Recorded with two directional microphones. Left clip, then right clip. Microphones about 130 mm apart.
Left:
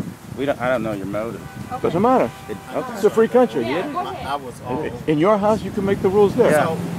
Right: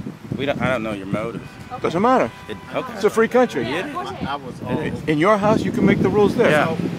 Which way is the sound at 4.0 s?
15° left (ahead or behind).